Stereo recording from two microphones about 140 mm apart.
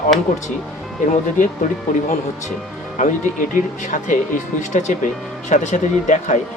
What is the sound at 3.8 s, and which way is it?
Speech, 65° left (ahead or behind).